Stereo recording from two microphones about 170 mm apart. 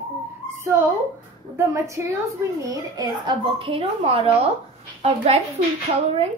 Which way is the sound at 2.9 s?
30° right (ahead or behind).